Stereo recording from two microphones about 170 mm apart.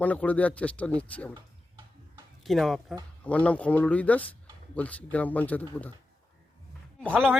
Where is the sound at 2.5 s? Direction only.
Centre (ahead or behind).